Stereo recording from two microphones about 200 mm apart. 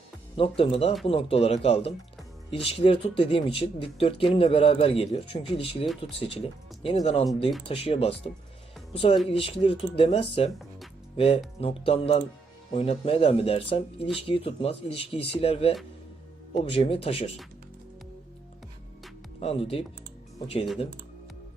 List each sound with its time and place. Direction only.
0.3 s speech: 30° left (ahead or behind)
11.6 s speech: 30° left (ahead or behind)
19.4 s speech: 30° left (ahead or behind)